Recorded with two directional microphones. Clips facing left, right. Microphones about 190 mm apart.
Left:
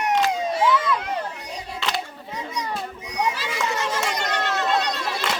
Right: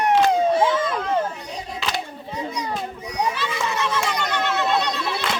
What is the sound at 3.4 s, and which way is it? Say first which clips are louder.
Children playing: right 1 dB; 40° left (ahead or behind).